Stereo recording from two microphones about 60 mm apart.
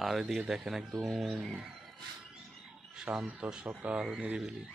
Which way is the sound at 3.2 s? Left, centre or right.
Centre.